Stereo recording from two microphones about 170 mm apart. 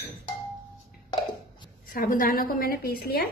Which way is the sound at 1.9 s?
55° left (ahead or behind).